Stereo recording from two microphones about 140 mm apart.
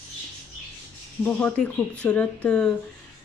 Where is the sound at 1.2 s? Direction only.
10° left (ahead or behind).